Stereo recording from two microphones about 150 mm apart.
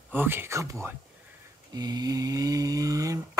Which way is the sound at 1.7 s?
25° right (ahead or behind).